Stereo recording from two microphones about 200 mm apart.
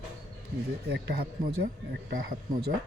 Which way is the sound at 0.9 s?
55° right (ahead or behind).